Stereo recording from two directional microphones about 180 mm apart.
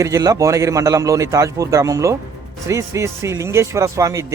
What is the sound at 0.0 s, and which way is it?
Speech, 15° right (ahead or behind).